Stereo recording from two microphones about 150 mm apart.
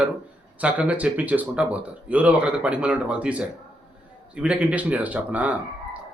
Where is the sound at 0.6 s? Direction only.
10° right (ahead or behind).